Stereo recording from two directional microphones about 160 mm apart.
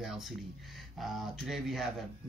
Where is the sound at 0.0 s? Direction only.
Centre (ahead or behind).